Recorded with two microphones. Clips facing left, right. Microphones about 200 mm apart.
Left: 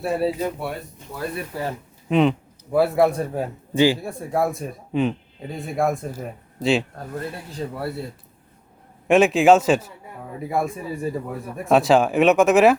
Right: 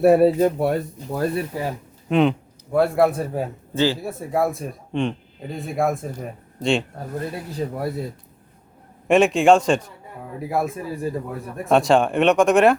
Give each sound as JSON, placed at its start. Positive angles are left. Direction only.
{"t": 0.0, "sound": "speech", "side_deg": -60}
{"t": 1.5, "sound": "speech", "side_deg": -15}
{"t": 2.0, "sound": "speech", "side_deg": 0}
{"t": 7.7, "sound": "speech", "side_deg": -15}
{"t": 9.0, "sound": "speech", "side_deg": 0}